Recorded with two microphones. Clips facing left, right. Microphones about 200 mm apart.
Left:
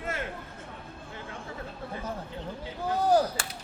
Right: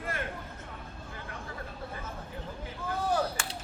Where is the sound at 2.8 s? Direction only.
35° left (ahead or behind).